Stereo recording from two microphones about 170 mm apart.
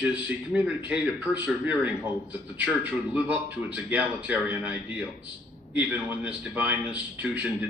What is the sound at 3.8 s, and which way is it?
A man's voice, 10° right (ahead or behind).